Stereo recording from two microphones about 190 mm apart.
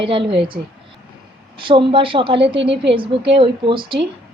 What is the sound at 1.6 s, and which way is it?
A woman's voice, 25° right (ahead or behind).